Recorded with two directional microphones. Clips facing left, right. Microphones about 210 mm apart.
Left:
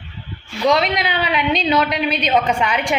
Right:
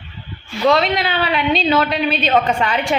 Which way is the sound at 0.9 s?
15° left (ahead or behind).